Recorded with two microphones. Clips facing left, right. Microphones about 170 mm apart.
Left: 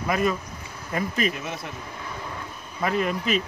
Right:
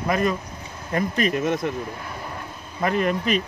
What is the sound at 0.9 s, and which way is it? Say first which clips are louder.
Speech: right 4 dB; 45° right (ahead or behind).